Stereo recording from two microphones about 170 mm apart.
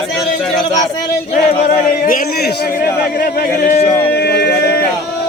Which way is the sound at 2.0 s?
55° left (ahead or behind).